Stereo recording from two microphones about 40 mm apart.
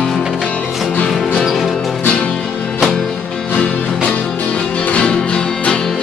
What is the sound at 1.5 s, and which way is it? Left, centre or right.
Music, centre.